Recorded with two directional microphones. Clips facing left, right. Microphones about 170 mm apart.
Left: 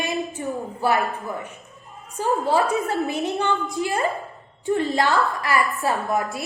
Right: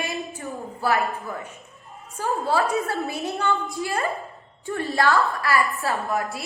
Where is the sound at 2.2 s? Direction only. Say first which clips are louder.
Left 3 dB; 20° left (ahead or behind).